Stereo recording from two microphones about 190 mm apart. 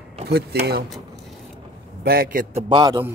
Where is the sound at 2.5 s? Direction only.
25° right (ahead or behind).